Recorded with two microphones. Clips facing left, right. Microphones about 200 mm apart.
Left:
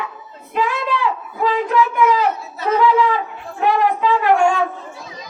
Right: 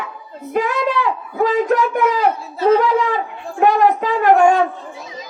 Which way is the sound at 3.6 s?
45° right (ahead or behind).